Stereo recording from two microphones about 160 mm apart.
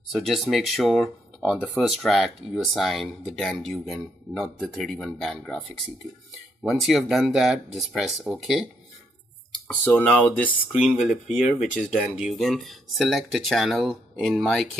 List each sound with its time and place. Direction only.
0.1 s speech: centre (ahead or behind)
6.6 s speech: centre (ahead or behind)
9.8 s speech: 10° left (ahead or behind)